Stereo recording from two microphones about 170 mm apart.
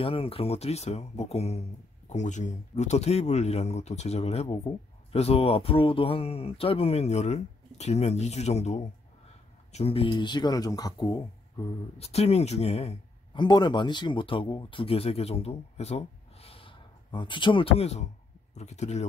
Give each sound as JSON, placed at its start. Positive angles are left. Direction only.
{"t": 0.0, "sound": "speech", "side_deg": 35}
{"t": 12.0, "sound": "speech", "side_deg": 35}